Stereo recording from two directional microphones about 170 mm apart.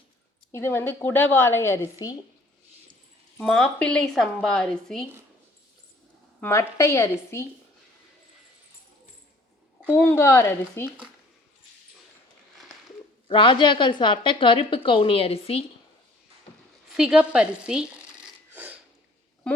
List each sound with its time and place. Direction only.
0.5 s a woman's voice: 15° left (ahead or behind)
3.3 s a woman's voice: 5° left (ahead or behind)
6.4 s a woman's voice: 15° left (ahead or behind)
9.8 s a woman's voice: 10° left (ahead or behind)
13.2 s a woman's voice: 30° left (ahead or behind)
16.9 s a sound: 5° right (ahead or behind)